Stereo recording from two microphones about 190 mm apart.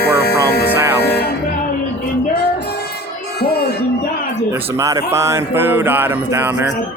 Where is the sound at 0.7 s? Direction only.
15° right (ahead or behind).